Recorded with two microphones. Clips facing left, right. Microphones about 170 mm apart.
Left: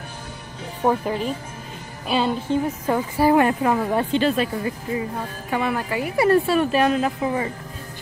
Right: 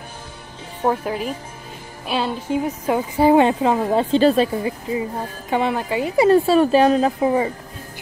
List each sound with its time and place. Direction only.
0.8 s speech: 5° right (ahead or behind)
2.5 s speech: 15° right (ahead or behind)
4.1 s a woman's voice: 35° right (ahead or behind)
5.5 s speech: 25° right (ahead or behind)